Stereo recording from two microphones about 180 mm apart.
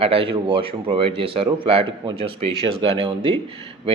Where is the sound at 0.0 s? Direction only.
30° right (ahead or behind).